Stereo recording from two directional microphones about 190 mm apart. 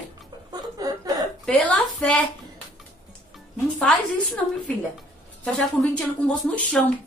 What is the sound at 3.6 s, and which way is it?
Speech, 5° left (ahead or behind).